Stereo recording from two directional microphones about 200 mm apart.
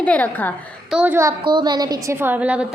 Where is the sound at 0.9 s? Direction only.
5° right (ahead or behind).